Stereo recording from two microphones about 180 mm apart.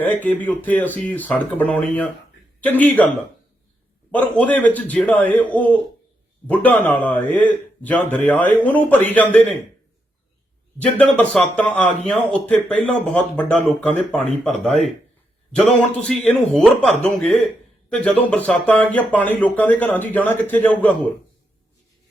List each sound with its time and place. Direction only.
0.0 s a man's voice: 10° left (ahead or behind)
4.1 s a man's voice: 10° left (ahead or behind)
10.8 s a man's voice: 5° left (ahead or behind)
14.7 s a man's voice: 35° right (ahead or behind)
16.5 s a man's voice: centre (ahead or behind)